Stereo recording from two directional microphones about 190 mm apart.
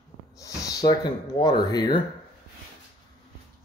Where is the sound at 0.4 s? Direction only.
15° left (ahead or behind).